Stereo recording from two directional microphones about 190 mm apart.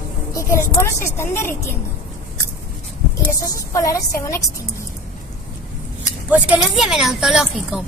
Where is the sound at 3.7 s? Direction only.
15° left (ahead or behind).